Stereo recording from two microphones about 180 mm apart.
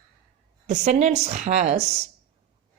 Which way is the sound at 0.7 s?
40° right (ahead or behind).